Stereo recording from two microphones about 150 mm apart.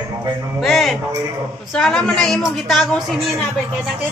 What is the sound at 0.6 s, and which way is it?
A woman's voice, centre (ahead or behind).